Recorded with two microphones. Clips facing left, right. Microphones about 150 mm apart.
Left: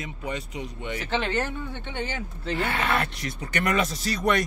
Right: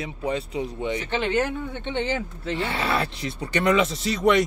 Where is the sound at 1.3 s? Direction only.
20° right (ahead or behind).